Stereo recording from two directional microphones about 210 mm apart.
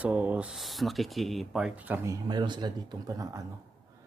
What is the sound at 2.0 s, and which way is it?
Speech, 20° right (ahead or behind).